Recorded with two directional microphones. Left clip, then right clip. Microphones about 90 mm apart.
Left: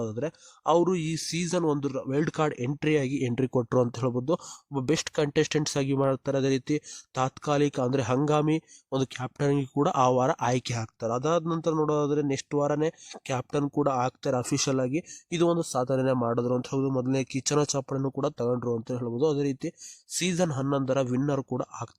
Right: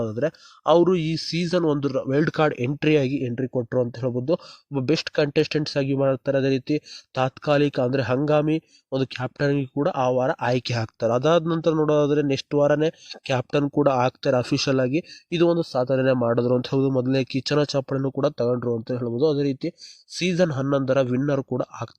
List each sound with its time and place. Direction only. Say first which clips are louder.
0.0 s speech: right 7 dB; 15° right (ahead or behind)
2.2 s speech: right 6 dB; 15° right (ahead or behind)
3.3 s speech: left 1 dB; 35° left (ahead or behind)
4.7 s speech: right 5 dB; 5° right (ahead or behind)
9.7 s speech: even; 30° left (ahead or behind)
10.4 s speech: right 4 dB; 5° left (ahead or behind)
10.7 s speech: right 7 dB; 20° right (ahead or behind)
14.2 s speech: right 6 dB; 10° right (ahead or behind)
14.8 s speech: right 6 dB; 15° right (ahead or behind)
15.3 s speech: right 5 dB; centre (ahead or behind)
16.0 s speech: right 6 dB; 15° right (ahead or behind)